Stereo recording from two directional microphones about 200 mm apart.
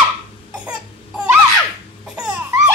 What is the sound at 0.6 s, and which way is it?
Crying, 5° right (ahead or behind).